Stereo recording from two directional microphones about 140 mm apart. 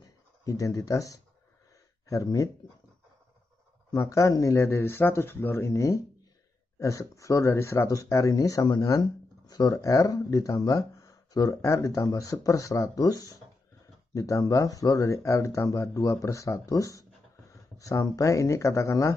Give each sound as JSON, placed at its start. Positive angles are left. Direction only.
{"t": 0.0, "sound": "speech", "side_deg": 25}
{"t": 3.9, "sound": "speech", "side_deg": 20}